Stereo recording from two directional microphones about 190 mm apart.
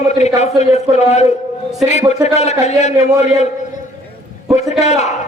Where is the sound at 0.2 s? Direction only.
35° left (ahead or behind).